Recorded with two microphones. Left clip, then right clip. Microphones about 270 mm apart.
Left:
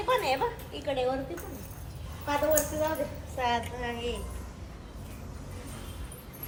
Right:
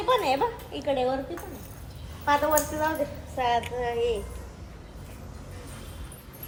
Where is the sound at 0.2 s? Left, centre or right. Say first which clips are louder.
Right 3 dB; right.